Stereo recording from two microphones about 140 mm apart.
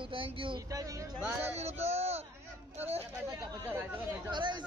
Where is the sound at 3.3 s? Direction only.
20° right (ahead or behind).